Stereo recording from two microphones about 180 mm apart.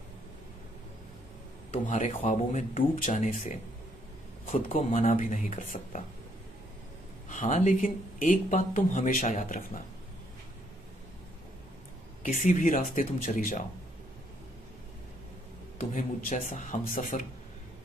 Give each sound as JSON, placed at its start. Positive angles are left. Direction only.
{"t": 1.7, "sound": "speech", "side_deg": 40}
{"t": 7.2, "sound": "speech", "side_deg": 45}
{"t": 12.2, "sound": "speech", "side_deg": 40}
{"t": 15.8, "sound": "speech", "side_deg": 45}